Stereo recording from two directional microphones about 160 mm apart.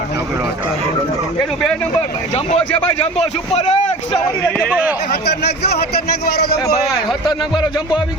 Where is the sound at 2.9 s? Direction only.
40° left (ahead or behind).